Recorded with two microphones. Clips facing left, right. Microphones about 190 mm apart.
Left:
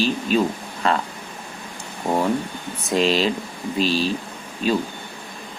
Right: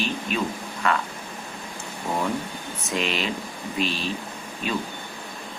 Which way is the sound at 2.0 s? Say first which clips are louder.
Left 6 dB; 40° left (ahead or behind).